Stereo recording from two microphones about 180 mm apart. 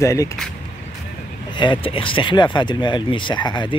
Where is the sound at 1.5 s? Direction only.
25° left (ahead or behind).